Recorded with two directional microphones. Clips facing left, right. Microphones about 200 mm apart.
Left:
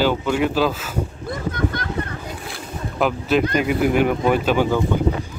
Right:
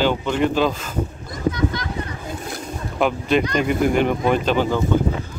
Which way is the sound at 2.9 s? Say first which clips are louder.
Even; centre (ahead or behind).